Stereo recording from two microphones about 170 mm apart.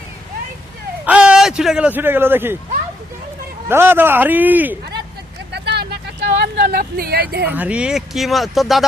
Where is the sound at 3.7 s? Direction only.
15° right (ahead or behind).